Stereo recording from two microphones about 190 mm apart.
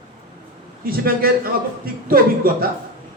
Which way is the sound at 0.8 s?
50° right (ahead or behind).